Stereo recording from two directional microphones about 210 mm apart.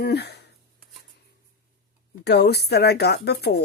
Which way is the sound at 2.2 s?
50° left (ahead or behind).